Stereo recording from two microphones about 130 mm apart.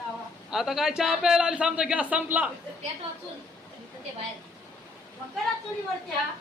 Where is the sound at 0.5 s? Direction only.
5° right (ahead or behind).